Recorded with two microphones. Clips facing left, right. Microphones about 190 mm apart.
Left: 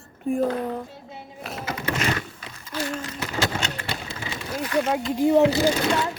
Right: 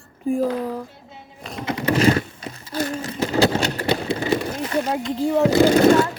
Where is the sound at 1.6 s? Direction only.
35° right (ahead or behind).